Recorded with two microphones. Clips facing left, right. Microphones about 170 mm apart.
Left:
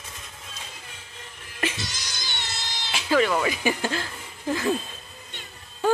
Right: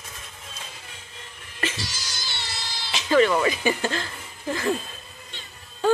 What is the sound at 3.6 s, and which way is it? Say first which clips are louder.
Speech: right 1 dB; 10° left (ahead or behind).